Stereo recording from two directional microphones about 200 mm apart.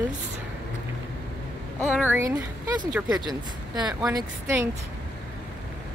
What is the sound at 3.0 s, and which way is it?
Speech, 20° right (ahead or behind).